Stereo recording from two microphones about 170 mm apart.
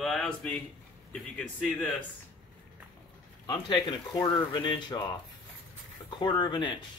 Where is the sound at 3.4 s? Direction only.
25° left (ahead or behind).